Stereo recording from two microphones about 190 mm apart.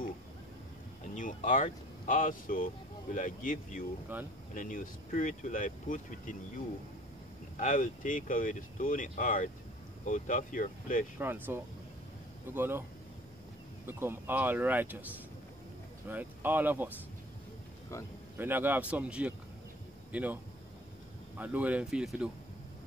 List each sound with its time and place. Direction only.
1.1 s speech: 45° left (ahead or behind)
4.1 s speech: 10° right (ahead or behind)
4.6 s speech: 45° left (ahead or behind)
7.5 s speech: 45° left (ahead or behind)
11.1 s speech: 10° right (ahead or behind)
13.8 s speech: 10° right (ahead or behind)
16.1 s speech: 10° right (ahead or behind)
18.4 s speech: 10° right (ahead or behind)
21.4 s speech: 10° right (ahead or behind)